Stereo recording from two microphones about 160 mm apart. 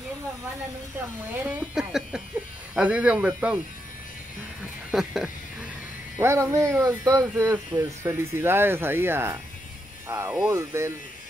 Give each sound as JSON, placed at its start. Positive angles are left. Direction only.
{"t": 1.4, "sound": "speech", "side_deg": -5}
{"t": 4.9, "sound": "speech", "side_deg": -5}
{"t": 6.1, "sound": "speech", "side_deg": -15}